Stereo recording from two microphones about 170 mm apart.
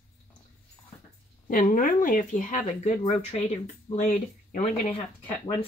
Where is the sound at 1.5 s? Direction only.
50° left (ahead or behind).